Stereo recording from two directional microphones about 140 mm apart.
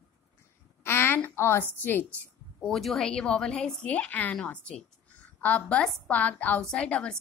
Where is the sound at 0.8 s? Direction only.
15° left (ahead or behind).